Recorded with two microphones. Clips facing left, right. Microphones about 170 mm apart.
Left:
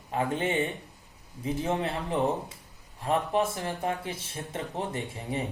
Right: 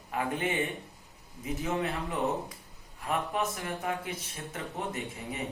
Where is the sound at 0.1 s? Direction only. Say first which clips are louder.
Left 3 dB; 25° left (ahead or behind).